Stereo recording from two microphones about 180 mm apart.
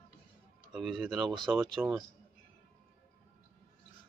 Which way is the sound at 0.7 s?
Centre (ahead or behind).